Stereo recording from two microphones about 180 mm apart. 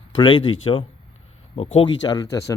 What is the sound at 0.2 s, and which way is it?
Speech, 25° left (ahead or behind).